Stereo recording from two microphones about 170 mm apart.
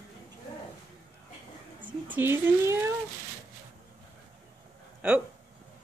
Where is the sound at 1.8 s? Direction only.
10° right (ahead or behind).